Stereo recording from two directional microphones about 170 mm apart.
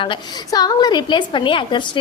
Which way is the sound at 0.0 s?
25° left (ahead or behind).